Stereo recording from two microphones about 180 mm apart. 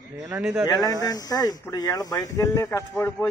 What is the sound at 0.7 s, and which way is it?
Speech, 20° left (ahead or behind).